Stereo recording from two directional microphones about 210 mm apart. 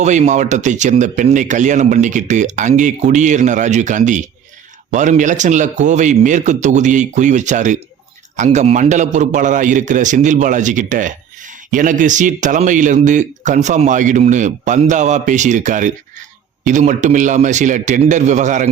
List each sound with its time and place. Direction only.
0.0 s a man's voice: 35° right (ahead or behind)